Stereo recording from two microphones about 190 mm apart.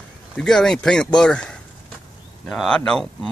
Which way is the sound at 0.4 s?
5° left (ahead or behind).